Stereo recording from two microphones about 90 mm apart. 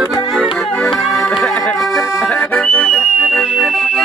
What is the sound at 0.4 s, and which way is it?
Music, centre (ahead or behind).